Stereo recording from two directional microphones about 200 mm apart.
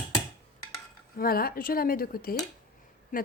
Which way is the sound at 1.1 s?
50° left (ahead or behind).